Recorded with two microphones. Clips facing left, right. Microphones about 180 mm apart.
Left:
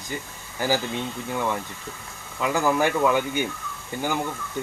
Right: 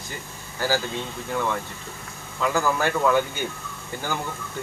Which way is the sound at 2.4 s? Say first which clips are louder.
Left 1 dB; 15° left (ahead or behind).